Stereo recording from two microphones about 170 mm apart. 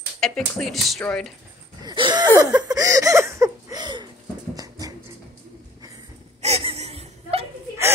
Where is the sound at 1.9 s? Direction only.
25° right (ahead or behind).